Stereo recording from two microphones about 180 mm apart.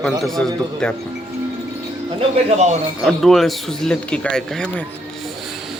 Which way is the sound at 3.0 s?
Centre (ahead or behind).